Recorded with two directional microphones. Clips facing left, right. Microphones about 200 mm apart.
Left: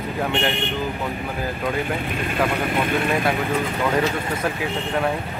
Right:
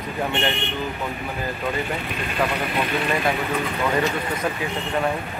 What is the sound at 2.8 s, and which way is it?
Speech, 50° left (ahead or behind).